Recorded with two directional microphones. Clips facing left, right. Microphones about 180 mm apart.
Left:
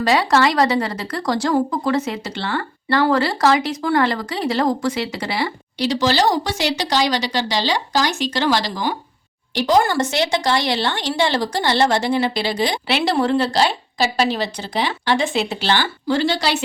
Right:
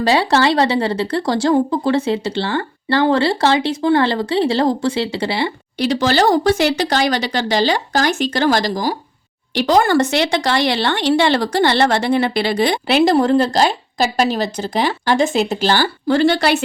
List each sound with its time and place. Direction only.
0.0 s speech: 30° right (ahead or behind)
5.7 s speech: 55° right (ahead or behind)
9.6 s speech: 65° right (ahead or behind)
13.0 s speech: 40° right (ahead or behind)
16.0 s speech: 55° right (ahead or behind)